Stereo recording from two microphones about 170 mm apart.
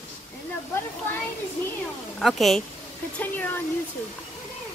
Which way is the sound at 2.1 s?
Centre (ahead or behind).